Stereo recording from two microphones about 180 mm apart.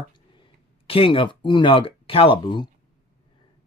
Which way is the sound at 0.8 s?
30° left (ahead or behind).